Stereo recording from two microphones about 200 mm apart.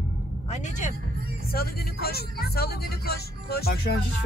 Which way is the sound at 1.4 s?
50° left (ahead or behind).